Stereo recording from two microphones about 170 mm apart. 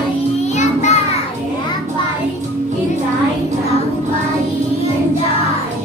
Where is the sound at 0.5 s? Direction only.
45° left (ahead or behind).